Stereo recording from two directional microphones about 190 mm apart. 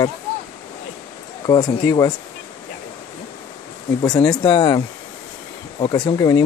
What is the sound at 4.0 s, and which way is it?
Speech, 25° left (ahead or behind).